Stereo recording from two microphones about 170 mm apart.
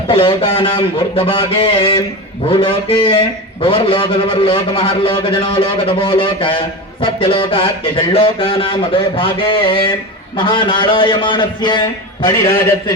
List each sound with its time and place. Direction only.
0.1 s a man's voice: 30° left (ahead or behind)